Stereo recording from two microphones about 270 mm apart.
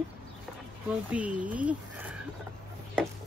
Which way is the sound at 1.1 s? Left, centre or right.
Centre.